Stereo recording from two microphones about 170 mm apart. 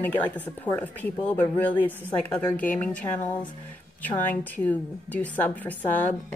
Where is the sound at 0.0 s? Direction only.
10° left (ahead or behind).